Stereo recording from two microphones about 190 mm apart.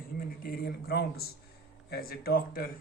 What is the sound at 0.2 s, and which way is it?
Speech, 50° left (ahead or behind).